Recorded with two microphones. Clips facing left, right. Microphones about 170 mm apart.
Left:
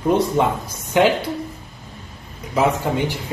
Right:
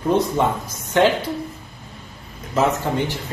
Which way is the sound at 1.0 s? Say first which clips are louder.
Even; 10° left (ahead or behind).